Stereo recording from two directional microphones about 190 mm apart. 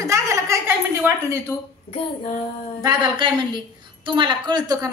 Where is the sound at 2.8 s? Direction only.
25° right (ahead or behind).